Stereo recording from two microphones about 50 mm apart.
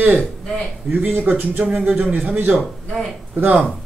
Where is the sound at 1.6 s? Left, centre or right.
Right.